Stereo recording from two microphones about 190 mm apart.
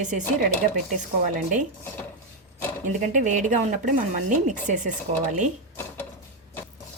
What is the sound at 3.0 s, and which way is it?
Speech, 40° right (ahead or behind).